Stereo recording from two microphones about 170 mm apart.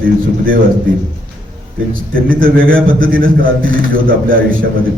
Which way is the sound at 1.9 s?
55° right (ahead or behind).